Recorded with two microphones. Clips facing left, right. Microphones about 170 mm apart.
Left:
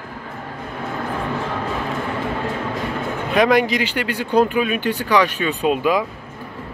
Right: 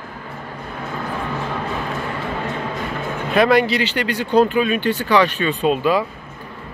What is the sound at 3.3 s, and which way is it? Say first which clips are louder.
Speech: right 1 dB; 10° left (ahead or behind).